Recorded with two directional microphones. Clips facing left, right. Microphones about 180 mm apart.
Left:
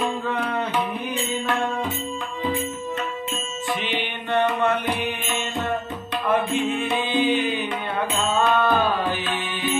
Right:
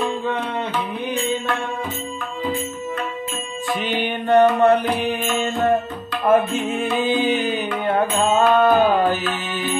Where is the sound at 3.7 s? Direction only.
40° right (ahead or behind).